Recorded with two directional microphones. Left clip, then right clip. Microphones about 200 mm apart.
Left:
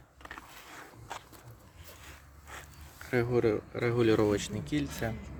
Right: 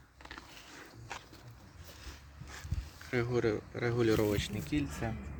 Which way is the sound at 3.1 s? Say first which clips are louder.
Left 4 dB; 15° left (ahead or behind).